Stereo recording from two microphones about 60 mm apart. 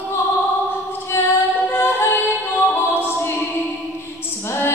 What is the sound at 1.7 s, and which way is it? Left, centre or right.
Music, left.